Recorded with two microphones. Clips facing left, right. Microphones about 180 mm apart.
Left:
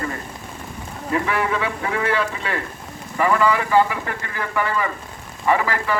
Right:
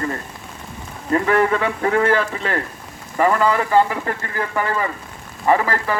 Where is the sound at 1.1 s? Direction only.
45° right (ahead or behind).